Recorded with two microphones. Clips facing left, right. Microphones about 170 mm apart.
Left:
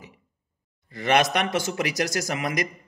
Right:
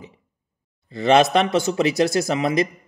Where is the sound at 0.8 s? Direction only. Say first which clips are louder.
Right 6 dB; 25° right (ahead or behind).